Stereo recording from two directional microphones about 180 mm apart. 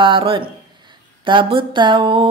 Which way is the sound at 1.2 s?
25° right (ahead or behind).